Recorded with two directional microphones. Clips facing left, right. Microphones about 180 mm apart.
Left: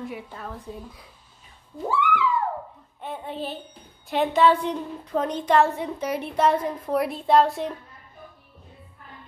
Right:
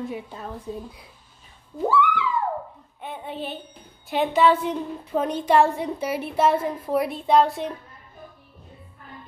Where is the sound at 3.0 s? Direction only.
Centre (ahead or behind).